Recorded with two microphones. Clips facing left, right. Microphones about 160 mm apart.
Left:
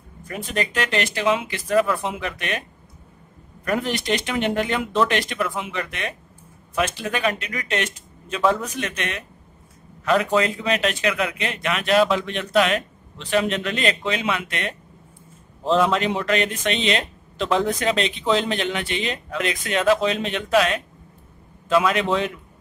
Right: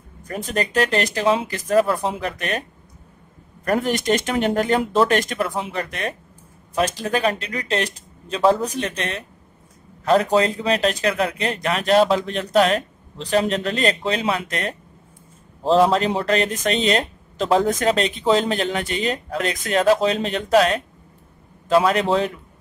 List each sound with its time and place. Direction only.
0.2 s speech: 40° right (ahead or behind)
3.6 s speech: 40° right (ahead or behind)